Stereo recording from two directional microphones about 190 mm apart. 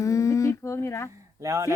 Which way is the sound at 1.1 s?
15° right (ahead or behind).